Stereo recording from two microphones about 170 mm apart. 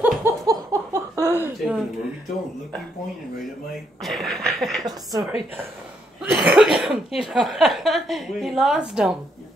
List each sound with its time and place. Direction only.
0.0 s a sound: 15° right (ahead or behind)
4.0 s speech: centre (ahead or behind)
4.8 s a woman's voice: 20° right (ahead or behind)
6.3 s speech: 5° right (ahead or behind)